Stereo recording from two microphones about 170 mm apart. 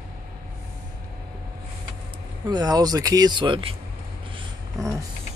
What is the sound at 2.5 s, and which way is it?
Speech, 25° right (ahead or behind).